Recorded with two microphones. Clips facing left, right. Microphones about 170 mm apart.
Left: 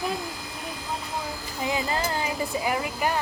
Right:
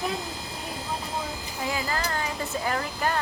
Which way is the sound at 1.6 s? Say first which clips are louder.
Left 2 dB; 20° left (ahead or behind).